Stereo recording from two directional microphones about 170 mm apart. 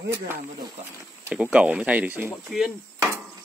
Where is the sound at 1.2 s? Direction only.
5° right (ahead or behind).